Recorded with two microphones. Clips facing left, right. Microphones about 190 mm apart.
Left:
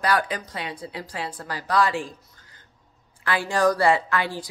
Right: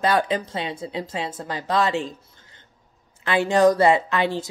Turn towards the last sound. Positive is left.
turn(degrees=-25)  # may be behind; listen again after turning